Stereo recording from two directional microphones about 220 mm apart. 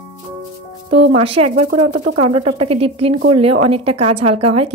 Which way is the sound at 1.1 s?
25° right (ahead or behind).